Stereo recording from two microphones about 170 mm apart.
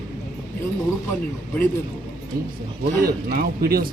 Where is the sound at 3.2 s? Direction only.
60° right (ahead or behind).